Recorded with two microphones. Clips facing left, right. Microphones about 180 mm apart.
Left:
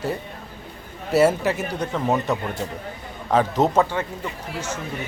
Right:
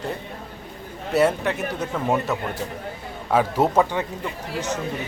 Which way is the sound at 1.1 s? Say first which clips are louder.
Left 2 dB; 5° left (ahead or behind).